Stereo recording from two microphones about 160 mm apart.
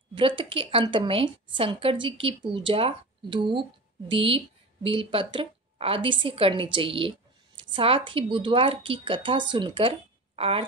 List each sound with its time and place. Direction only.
0.1 s a woman's voice: 35° right (ahead or behind)